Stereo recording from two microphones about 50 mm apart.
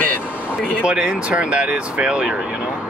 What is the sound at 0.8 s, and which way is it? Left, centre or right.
Speech, centre.